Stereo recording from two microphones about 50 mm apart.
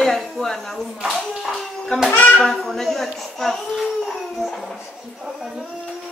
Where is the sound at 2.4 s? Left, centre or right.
Centre.